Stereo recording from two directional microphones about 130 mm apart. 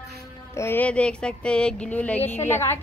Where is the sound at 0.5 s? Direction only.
20° left (ahead or behind).